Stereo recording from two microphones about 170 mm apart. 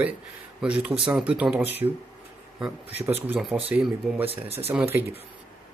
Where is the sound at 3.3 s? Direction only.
5° right (ahead or behind).